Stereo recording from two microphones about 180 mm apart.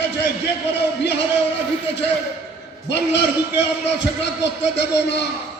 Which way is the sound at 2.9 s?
75° left (ahead or behind).